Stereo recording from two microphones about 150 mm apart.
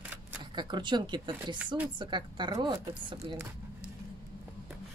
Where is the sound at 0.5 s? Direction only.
30° right (ahead or behind).